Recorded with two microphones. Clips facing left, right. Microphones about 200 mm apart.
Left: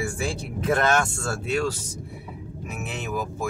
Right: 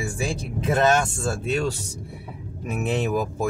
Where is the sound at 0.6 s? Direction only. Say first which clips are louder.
Right 2 dB; 20° right (ahead or behind).